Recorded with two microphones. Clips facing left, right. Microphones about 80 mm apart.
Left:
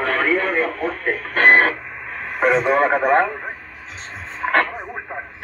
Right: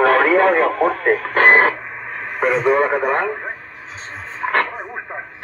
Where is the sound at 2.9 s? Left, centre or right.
Centre.